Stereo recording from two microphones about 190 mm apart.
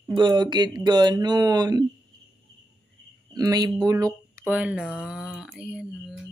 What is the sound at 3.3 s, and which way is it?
Speech, 20° right (ahead or behind).